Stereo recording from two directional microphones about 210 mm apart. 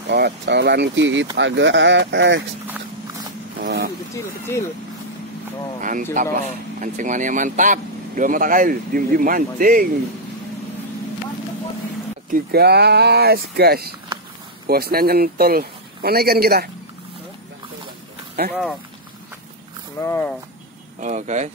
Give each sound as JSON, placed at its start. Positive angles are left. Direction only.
{"t": 0.0, "sound": "a man's voice", "side_deg": -55}
{"t": 3.6, "sound": "vehicle", "side_deg": -55}
{"t": 4.1, "sound": "speech", "side_deg": 15}
{"t": 5.8, "sound": "speech", "side_deg": -40}
{"t": 12.3, "sound": "a man's voice", "side_deg": -50}
{"t": 18.5, "sound": "speech", "side_deg": 5}
{"t": 20.0, "sound": "speech", "side_deg": 10}
{"t": 21.0, "sound": "speech", "side_deg": -35}